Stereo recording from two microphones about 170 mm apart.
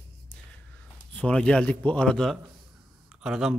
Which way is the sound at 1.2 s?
5° left (ahead or behind).